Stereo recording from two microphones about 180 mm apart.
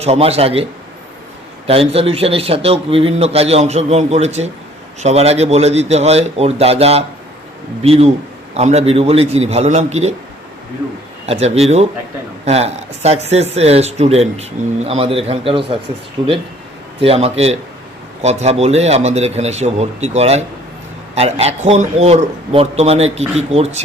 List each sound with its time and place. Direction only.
0.0 s a man's voice: 35° right (ahead or behind)
1.6 s a man's voice: 30° right (ahead or behind)
11.3 s a man's voice: 35° right (ahead or behind)